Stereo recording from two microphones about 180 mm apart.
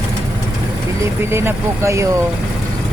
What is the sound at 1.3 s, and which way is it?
Speech, 15° right (ahead or behind).